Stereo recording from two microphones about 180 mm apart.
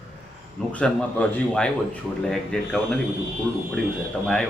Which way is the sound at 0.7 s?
5° left (ahead or behind).